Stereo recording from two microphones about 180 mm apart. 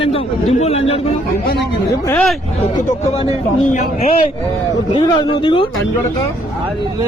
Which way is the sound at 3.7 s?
40° left (ahead or behind).